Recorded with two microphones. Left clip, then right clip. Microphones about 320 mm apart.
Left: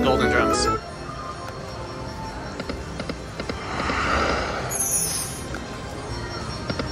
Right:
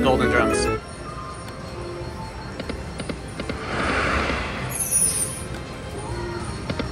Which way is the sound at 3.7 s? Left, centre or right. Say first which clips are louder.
Right 3 dB; right.